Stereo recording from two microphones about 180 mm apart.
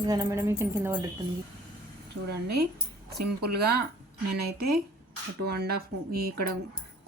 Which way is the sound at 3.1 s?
65° right (ahead or behind).